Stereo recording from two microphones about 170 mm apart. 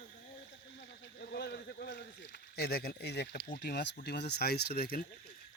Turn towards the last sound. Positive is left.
turn(degrees=60)  # may be behind; listen again after turning